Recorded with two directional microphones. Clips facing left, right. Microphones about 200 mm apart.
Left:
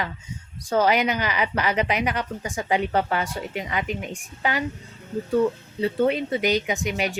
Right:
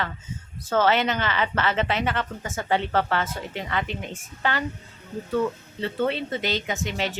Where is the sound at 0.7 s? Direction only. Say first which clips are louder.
Left 1 dB; 15° left (ahead or behind).